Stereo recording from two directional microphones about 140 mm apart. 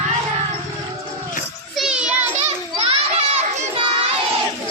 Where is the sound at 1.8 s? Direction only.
5° right (ahead or behind).